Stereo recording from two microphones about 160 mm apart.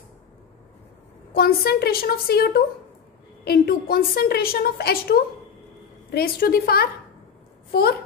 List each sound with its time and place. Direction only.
1.3 s a woman's voice: 75° left (ahead or behind)